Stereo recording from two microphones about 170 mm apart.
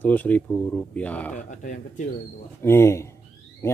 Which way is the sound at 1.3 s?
50° left (ahead or behind).